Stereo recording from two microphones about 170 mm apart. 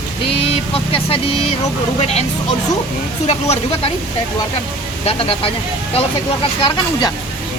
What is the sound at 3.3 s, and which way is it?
Speech, 35° left (ahead or behind).